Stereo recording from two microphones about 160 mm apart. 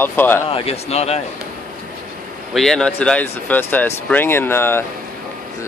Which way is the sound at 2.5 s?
5° left (ahead or behind).